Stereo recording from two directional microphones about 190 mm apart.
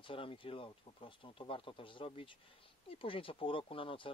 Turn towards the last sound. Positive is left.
turn(degrees=25)  # may be behind; listen again after turning